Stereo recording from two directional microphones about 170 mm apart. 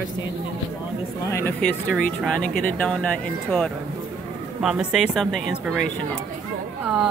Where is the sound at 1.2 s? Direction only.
15° left (ahead or behind).